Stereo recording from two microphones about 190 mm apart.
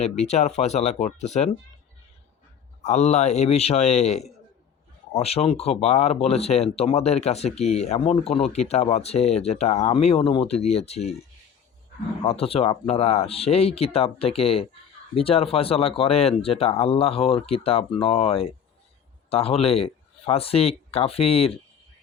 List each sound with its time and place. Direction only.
0.0 s speech: 35° left (ahead or behind)
2.8 s speech: 35° left (ahead or behind)
12.2 s speech: 30° left (ahead or behind)